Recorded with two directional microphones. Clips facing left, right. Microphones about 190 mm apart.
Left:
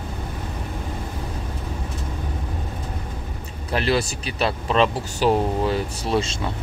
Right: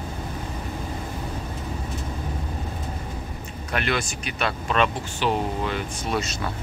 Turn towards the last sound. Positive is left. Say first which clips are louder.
# left 4 dB
turn(degrees=25)  # may be behind; listen again after turning